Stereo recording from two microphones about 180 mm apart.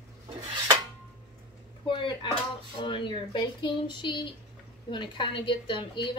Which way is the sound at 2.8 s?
30° left (ahead or behind).